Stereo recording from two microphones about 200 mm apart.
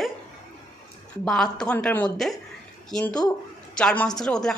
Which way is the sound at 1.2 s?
5° left (ahead or behind).